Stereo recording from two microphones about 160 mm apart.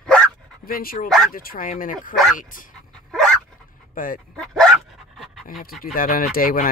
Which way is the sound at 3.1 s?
5° left (ahead or behind).